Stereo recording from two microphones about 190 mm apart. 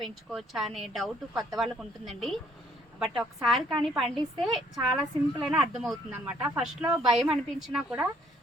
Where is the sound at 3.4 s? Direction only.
Centre (ahead or behind).